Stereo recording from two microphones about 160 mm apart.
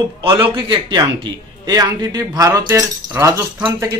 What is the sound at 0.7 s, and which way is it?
A man's voice, 25° right (ahead or behind).